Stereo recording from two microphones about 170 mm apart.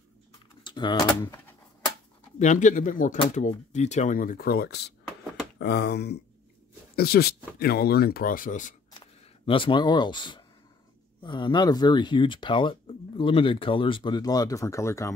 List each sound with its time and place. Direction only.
0.7 s speech: 25° left (ahead or behind)
2.3 s speech: 45° left (ahead or behind)
8.9 s speech: 30° left (ahead or behind)